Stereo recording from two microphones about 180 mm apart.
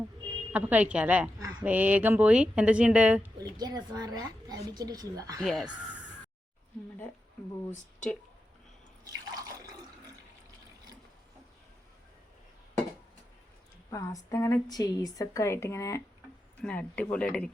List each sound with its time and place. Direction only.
0.5 s a woman's voice: 10° right (ahead or behind)
3.6 s a woman's voice: 20° right (ahead or behind)
5.4 s speech: centre (ahead or behind)
9.0 s water: 20° right (ahead or behind)
13.9 s a woman's voice: 20° left (ahead or behind)